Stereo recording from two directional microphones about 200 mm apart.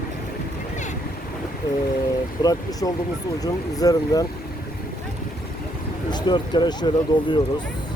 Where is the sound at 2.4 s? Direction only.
20° left (ahead or behind).